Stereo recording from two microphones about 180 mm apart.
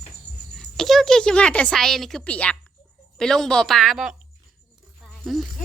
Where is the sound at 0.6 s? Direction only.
Centre (ahead or behind).